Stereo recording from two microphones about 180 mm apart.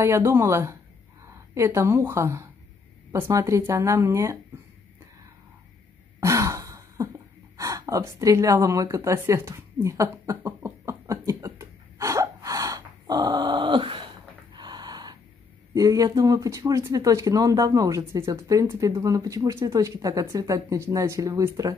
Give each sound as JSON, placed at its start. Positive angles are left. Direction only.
{"t": 0.0, "sound": "speech", "side_deg": -15}
{"t": 6.2, "sound": "a sound", "side_deg": -15}
{"t": 15.7, "sound": "speech", "side_deg": -20}